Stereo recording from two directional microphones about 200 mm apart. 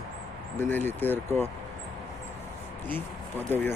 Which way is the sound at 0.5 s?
10° left (ahead or behind).